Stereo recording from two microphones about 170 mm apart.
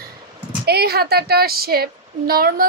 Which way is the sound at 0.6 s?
70° right (ahead or behind).